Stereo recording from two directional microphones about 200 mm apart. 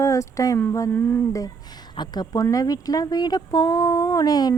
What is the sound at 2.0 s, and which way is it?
Speech, 20° left (ahead or behind).